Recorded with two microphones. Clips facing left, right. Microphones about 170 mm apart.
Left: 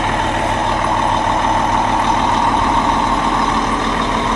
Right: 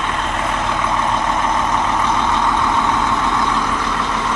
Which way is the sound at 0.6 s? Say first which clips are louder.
Left 3 dB; 35° left (ahead or behind).